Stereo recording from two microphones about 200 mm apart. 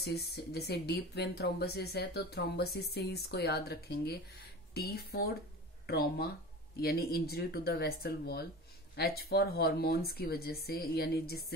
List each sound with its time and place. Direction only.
0.0 s speech: 55° left (ahead or behind)